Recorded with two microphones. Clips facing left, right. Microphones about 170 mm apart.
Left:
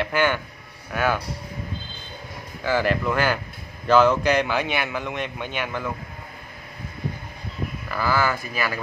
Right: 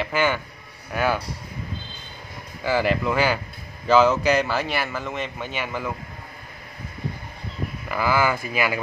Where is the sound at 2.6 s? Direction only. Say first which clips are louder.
Even; 10° right (ahead or behind).